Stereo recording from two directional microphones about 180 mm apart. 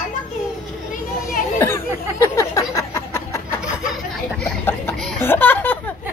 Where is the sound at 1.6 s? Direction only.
15° left (ahead or behind).